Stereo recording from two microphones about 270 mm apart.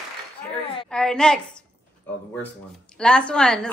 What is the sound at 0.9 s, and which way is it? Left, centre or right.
Speech, centre.